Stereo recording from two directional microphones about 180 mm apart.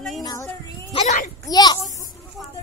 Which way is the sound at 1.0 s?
40° left (ahead or behind).